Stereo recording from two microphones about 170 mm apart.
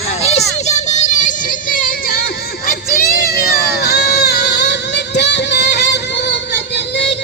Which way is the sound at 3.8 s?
70° left (ahead or behind).